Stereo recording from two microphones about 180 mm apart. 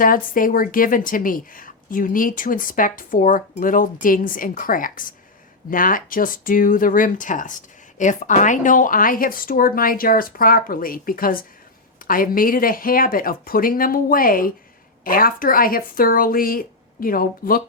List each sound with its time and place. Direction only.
0.0 s speech: 50° left (ahead or behind)